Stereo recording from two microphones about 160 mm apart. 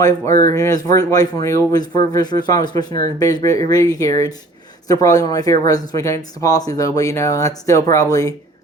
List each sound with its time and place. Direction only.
0.0 s speech: 20° left (ahead or behind)